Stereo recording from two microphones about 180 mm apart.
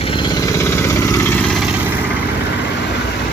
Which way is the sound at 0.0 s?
30° left (ahead or behind).